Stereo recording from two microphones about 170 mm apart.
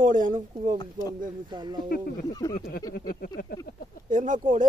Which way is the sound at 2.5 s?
60° left (ahead or behind).